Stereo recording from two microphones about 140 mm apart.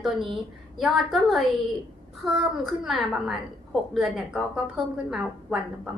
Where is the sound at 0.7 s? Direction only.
Centre (ahead or behind).